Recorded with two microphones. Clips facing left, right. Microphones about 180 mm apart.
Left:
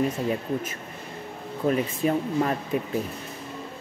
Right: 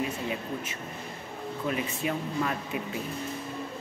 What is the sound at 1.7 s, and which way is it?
Speech, 40° left (ahead or behind).